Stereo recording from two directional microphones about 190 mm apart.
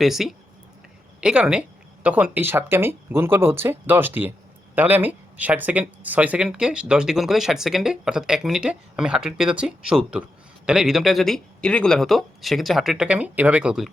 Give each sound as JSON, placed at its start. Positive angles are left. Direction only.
{"t": 0.0, "sound": "speech", "side_deg": 0}